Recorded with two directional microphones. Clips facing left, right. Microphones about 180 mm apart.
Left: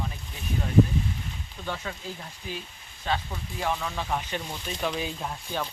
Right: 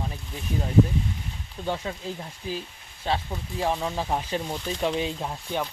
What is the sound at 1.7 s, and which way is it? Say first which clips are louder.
Speech: right 5 dB; 25° right (ahead or behind).